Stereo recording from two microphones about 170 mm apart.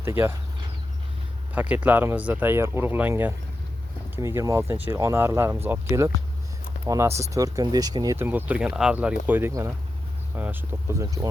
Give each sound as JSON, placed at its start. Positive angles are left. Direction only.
{"t": 0.0, "sound": "speech", "side_deg": -15}
{"t": 1.5, "sound": "speech", "side_deg": -10}